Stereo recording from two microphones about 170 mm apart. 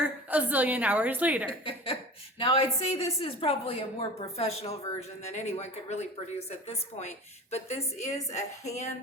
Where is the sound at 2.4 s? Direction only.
35° left (ahead or behind).